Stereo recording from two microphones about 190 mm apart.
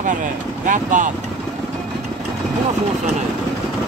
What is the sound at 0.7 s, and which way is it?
Speech, 40° right (ahead or behind).